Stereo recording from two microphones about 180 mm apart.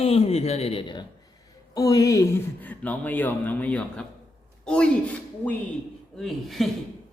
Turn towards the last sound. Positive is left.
turn(degrees=0)  # may be behind; listen again after turning